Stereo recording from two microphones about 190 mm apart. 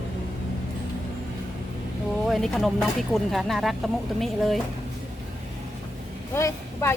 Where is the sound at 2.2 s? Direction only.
Centre (ahead or behind).